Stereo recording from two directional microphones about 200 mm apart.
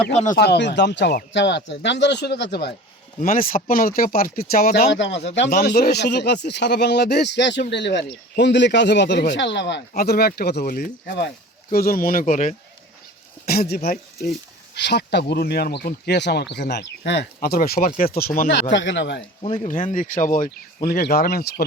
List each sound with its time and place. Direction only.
0.3 s speech: 55° left (ahead or behind)
3.2 s speech: 45° left (ahead or behind); by 5.5 s 60° left (ahead or behind)
5.5 s speech: 50° left (ahead or behind)
13.5 s speech: 50° left (ahead or behind)
14.8 s speech: 60° left (ahead or behind)
18.7 s speech: 65° left (ahead or behind)
19.4 s speech: 30° left (ahead or behind); by 21.6 s 50° left (ahead or behind)